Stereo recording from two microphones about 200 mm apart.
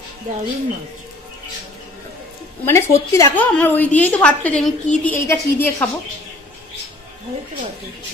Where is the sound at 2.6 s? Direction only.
15° left (ahead or behind).